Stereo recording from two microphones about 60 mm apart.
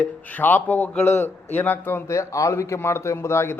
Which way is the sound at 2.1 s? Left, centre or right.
Left.